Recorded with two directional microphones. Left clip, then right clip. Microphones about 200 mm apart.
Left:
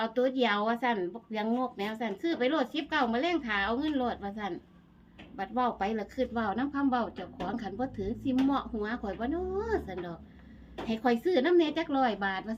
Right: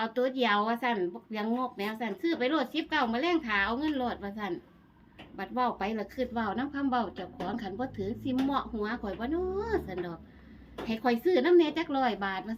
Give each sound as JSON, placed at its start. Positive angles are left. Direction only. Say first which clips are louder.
{"t": 0.0, "sound": "a woman's voice", "louder": "left 1 dB", "side_deg": 0}